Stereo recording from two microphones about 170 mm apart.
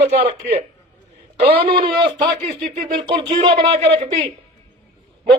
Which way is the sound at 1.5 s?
30° right (ahead or behind).